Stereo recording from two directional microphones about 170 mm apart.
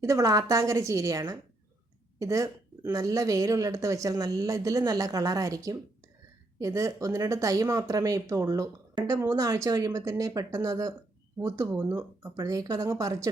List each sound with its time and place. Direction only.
0.0 s speech: 20° right (ahead or behind)